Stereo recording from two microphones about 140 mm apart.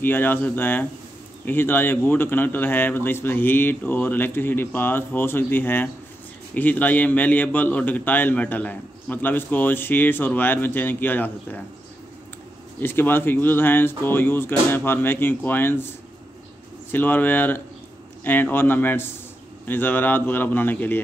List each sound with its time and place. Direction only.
0.0 s a man's voice: 15° left (ahead or behind)
12.8 s a man's voice: 15° left (ahead or behind)
16.9 s a man's voice: 15° left (ahead or behind)